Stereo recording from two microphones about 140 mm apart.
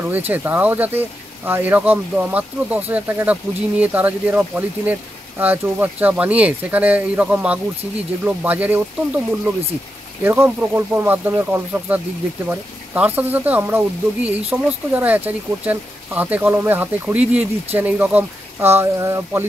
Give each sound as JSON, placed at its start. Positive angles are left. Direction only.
{"t": 0.3, "sound": "speech", "side_deg": -10}